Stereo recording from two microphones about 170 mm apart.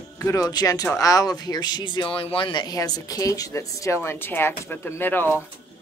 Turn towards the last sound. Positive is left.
turn(degrees=10)  # may be behind; listen again after turning